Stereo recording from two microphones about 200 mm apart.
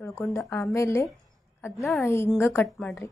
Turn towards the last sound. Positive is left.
turn(degrees=5)  # may be behind; listen again after turning